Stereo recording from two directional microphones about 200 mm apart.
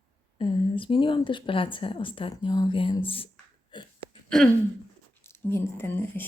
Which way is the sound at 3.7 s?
25° left (ahead or behind).